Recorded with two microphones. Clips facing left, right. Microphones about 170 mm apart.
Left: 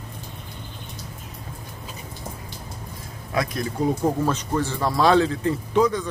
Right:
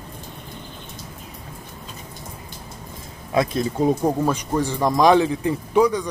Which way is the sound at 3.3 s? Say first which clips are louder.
Right 5 dB; 25° right (ahead or behind).